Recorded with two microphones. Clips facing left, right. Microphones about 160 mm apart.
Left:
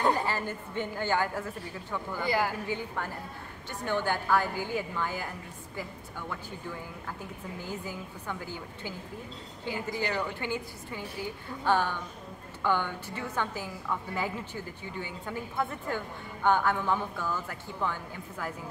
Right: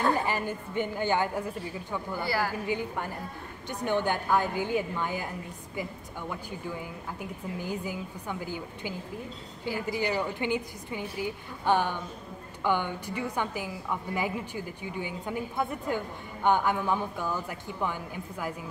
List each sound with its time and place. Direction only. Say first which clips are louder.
0.1 s a woman's voice: right 1 dB; 15° right (ahead or behind)
2.2 s a woman's voice: left 2 dB; 20° left (ahead or behind)
2.6 s a woman's voice: right 3 dB; 15° right (ahead or behind)
9.9 s a woman's voice: right 3 dB; 15° right (ahead or behind)